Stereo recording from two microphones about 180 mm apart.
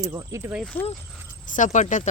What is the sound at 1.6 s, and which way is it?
Speech, 40° left (ahead or behind).